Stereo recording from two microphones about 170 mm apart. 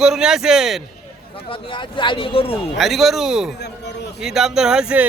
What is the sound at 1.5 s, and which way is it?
A man's voice, 30° left (ahead or behind).